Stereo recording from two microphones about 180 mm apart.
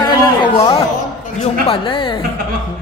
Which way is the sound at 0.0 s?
20° left (ahead or behind).